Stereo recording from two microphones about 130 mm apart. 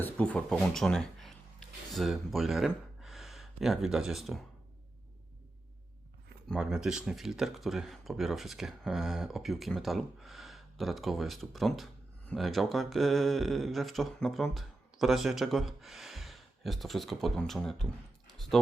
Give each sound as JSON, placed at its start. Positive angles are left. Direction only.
{"t": 0.0, "sound": "speech", "side_deg": 10}
{"t": 6.5, "sound": "speech", "side_deg": -5}